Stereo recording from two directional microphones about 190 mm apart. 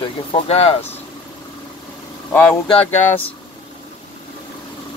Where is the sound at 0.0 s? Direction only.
30° left (ahead or behind).